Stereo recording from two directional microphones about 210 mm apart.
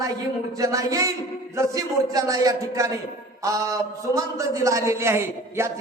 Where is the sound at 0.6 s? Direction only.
15° right (ahead or behind).